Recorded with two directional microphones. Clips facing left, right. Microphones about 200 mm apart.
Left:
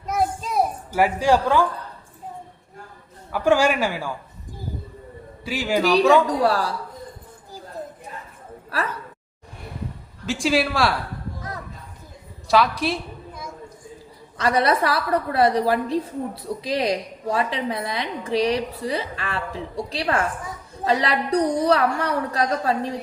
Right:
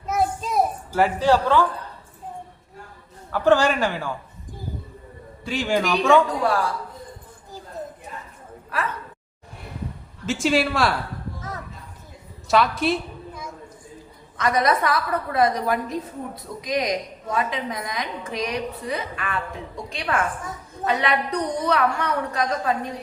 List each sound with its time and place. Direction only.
0.0 s a sound: centre (ahead or behind)
0.9 s a man's voice: 10° left (ahead or behind)
3.3 s a man's voice: 10° left (ahead or behind)
5.5 s a man's voice: 5° left (ahead or behind)
6.4 s a woman's voice: 35° left (ahead or behind)
10.2 s a woman's voice: centre (ahead or behind)
12.5 s a sound: centre (ahead or behind)
14.3 s a woman's voice: 30° left (ahead or behind)